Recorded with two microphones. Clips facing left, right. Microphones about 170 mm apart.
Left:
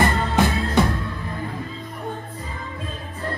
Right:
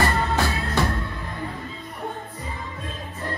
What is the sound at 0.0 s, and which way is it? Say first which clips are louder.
Music: left 3 dB; 20° left (ahead or behind).